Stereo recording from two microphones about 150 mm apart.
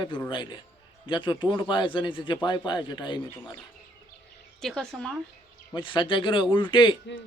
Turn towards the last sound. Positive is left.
turn(degrees=30)  # may be behind; listen again after turning